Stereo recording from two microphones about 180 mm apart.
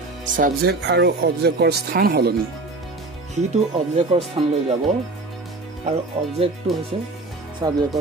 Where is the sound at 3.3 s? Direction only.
40° right (ahead or behind).